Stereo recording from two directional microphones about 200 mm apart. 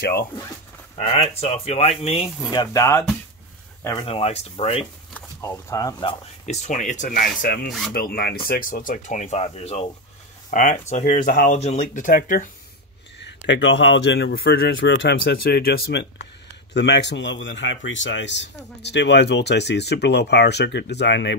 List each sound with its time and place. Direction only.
0.0 s speech: 50° left (ahead or behind)
0.9 s speech: 30° left (ahead or behind)
2.5 s speech: 20° left (ahead or behind)
4.0 s speech: 30° left (ahead or behind)
5.1 s speech: 15° left (ahead or behind)
6.4 s speech: 35° left (ahead or behind)
13.5 s speech: 70° left (ahead or behind)